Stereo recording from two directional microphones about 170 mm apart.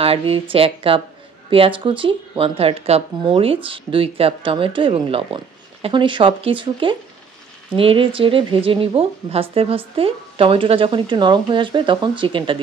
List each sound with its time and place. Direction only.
0.0 s speech: 35° right (ahead or behind)